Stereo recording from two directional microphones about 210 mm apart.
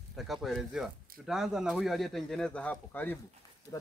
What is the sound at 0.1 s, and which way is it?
Speech, centre (ahead or behind).